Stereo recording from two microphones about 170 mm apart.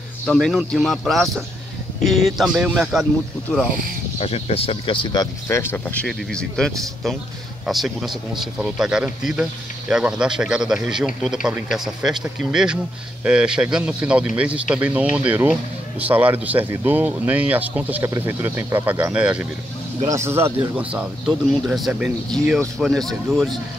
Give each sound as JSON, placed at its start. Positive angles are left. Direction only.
{"t": 0.2, "sound": "speech", "side_deg": 0}
{"t": 4.2, "sound": "speech", "side_deg": 35}